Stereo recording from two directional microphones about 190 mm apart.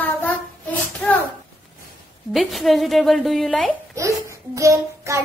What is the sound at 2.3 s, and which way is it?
A woman's voice, centre (ahead or behind).